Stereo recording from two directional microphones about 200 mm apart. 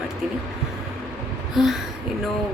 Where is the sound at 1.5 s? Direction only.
Centre (ahead or behind).